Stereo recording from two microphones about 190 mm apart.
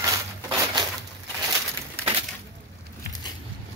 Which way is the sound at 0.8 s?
20° right (ahead or behind).